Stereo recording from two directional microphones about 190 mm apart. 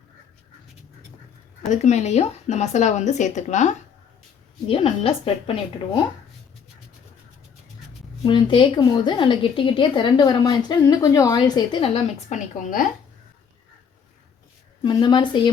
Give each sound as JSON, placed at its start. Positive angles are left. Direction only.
{"t": 1.6, "sound": "a woman's voice", "side_deg": 40}
{"t": 8.2, "sound": "a woman's voice", "side_deg": 25}
{"t": 12.3, "sound": "a woman's voice", "side_deg": 40}
{"t": 14.8, "sound": "a woman's voice", "side_deg": 25}